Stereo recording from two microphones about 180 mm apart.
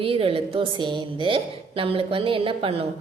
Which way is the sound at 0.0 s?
30° right (ahead or behind).